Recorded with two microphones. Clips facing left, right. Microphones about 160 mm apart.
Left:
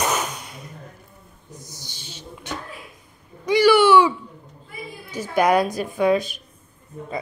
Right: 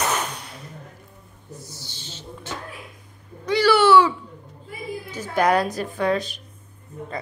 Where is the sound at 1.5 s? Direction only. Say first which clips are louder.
Right 2 dB; 15° left (ahead or behind).